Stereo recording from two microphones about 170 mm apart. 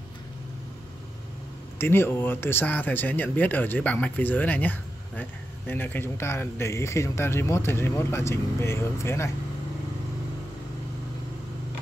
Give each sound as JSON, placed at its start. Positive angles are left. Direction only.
{"t": 1.8, "sound": "speech", "side_deg": 15}